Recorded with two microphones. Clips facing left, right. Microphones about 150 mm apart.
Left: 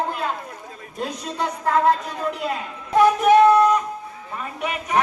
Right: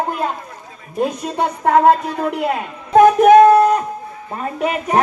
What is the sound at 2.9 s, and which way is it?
Music, 45° right (ahead or behind).